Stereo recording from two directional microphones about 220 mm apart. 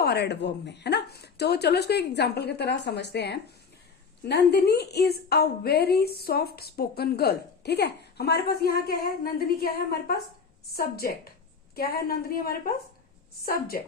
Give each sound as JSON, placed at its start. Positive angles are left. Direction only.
{"t": 0.0, "sound": "a woman's voice", "side_deg": 45}